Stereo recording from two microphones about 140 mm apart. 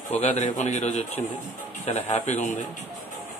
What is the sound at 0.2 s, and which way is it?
A man's voice, 55° left (ahead or behind).